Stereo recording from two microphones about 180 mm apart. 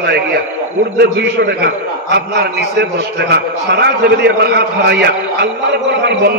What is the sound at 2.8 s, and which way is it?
A man's voice, 65° right (ahead or behind).